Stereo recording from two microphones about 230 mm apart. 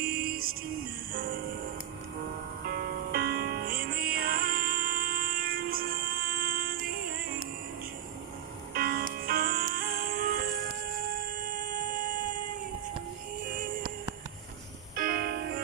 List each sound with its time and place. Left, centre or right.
0.0 s music: right
2.6 s music: right
8.7 s music: right
13.5 s music: right
15.0 s music: right